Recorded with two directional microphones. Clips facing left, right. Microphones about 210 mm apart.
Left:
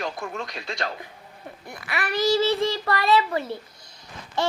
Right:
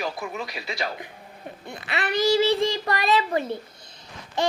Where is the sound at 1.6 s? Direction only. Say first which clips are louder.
Right 1 dB; 25° right (ahead or behind).